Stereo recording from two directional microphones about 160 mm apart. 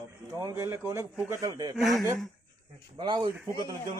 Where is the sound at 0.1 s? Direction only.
20° right (ahead or behind).